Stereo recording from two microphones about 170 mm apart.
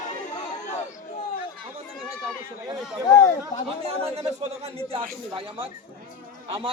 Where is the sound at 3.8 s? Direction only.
35° right (ahead or behind).